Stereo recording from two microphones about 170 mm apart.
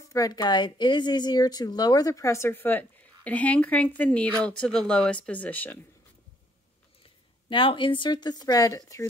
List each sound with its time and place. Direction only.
0.1 s a woman's voice: 20° left (ahead or behind)
7.4 s a woman's voice: 30° left (ahead or behind)